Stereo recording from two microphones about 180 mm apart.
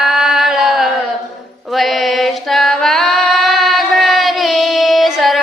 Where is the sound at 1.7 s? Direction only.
Centre (ahead or behind).